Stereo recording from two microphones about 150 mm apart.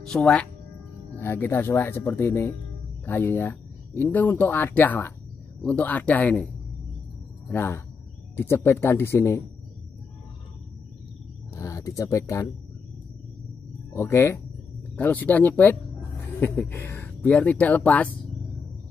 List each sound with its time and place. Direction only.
0.0 s speech: 5° left (ahead or behind)
11.5 s a sound: 20° left (ahead or behind)
13.9 s speech: 15° left (ahead or behind)